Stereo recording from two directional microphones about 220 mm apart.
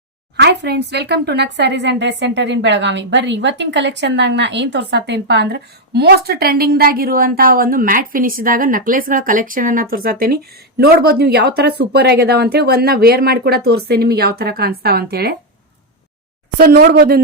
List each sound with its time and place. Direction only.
0.3 s a woman's voice: 50° right (ahead or behind)
16.6 s a woman's voice: 40° right (ahead or behind)